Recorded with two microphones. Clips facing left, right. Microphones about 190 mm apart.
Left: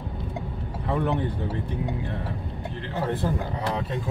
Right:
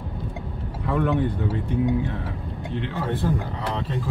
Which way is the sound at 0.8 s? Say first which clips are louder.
Right 2 dB; 60° right (ahead or behind).